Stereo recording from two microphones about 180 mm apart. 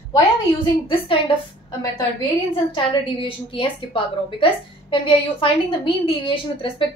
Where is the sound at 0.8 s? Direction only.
30° left (ahead or behind).